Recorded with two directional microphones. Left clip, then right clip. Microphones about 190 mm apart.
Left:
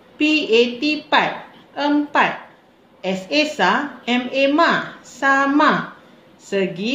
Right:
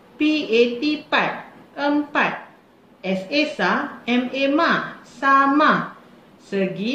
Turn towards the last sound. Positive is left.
turn(degrees=45)  # may be behind; listen again after turning